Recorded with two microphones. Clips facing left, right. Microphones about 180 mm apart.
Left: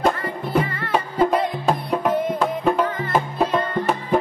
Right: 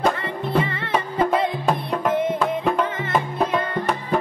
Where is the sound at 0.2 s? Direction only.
25° right (ahead or behind).